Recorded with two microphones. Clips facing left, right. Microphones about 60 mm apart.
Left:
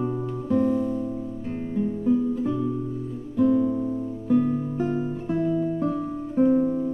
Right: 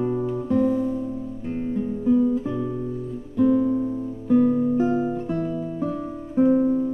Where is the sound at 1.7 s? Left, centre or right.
Centre.